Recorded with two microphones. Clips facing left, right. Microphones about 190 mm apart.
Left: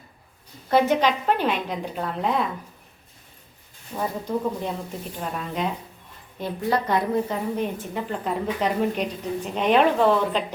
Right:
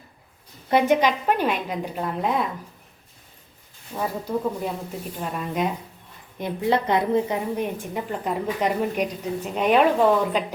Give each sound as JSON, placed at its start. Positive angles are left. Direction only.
{"t": 0.7, "sound": "a woman's voice", "side_deg": -10}
{"t": 3.9, "sound": "a woman's voice", "side_deg": -5}
{"t": 6.4, "sound": "a woman's voice", "side_deg": -20}